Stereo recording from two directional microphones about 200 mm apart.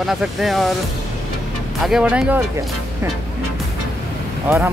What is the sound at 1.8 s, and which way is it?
Speech, centre (ahead or behind).